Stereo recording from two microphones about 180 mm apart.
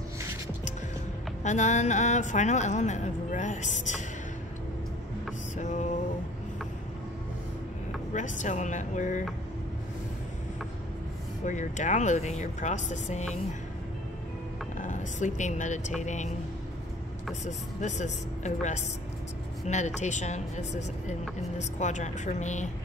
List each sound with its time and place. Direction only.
1.4 s speech: 40° left (ahead or behind)
5.6 s a sound: 40° left (ahead or behind)
8.1 s speech: 45° left (ahead or behind)
11.4 s speech: 45° left (ahead or behind)
14.8 s speech: 45° left (ahead or behind)
17.5 s speech: 40° left (ahead or behind)